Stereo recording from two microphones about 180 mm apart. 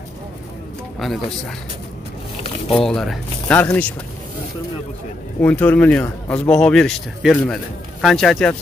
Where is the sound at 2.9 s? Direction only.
Centre (ahead or behind).